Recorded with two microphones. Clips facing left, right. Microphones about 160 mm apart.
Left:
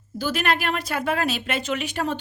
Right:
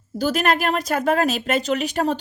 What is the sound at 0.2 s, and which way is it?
Speech, 40° right (ahead or behind).